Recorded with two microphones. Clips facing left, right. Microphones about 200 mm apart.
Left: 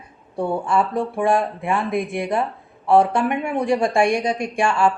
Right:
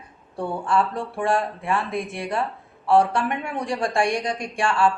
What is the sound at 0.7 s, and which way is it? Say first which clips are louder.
Speech: left 3 dB; 15° left (ahead or behind).